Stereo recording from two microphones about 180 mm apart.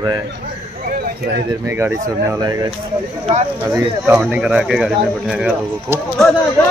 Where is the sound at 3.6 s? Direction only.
5° right (ahead or behind).